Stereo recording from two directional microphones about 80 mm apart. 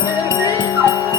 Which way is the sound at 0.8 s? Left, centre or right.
Left.